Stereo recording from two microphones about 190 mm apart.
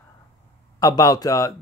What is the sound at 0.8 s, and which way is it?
Speech, 20° left (ahead or behind).